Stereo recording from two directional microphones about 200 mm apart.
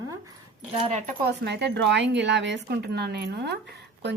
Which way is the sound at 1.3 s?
55° right (ahead or behind).